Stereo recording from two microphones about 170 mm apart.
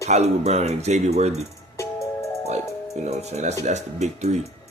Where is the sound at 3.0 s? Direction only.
40° right (ahead or behind).